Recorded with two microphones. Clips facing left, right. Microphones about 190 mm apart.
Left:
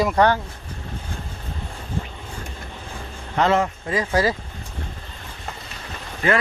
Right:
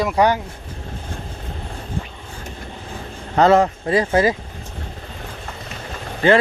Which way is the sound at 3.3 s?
35° right (ahead or behind).